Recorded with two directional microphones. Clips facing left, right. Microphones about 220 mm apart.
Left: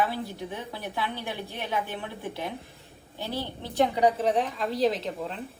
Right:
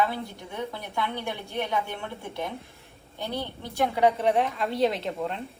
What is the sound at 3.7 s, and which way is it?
Speech, 15° left (ahead or behind).